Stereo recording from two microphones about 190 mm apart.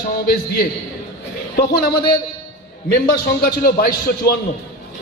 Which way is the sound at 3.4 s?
50° left (ahead or behind).